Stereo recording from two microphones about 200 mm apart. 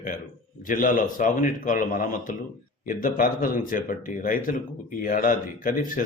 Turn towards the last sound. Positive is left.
turn(degrees=45)  # may be behind; listen again after turning